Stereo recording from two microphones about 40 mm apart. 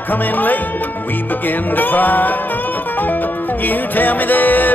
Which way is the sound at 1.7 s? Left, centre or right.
Left.